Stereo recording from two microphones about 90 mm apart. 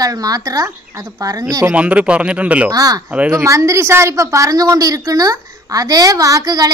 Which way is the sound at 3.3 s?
35° right (ahead or behind).